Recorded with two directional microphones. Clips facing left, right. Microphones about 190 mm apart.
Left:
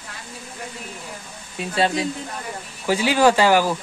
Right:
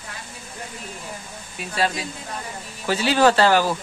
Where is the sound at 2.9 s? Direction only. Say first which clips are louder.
Left 1 dB; 15° left (ahead or behind).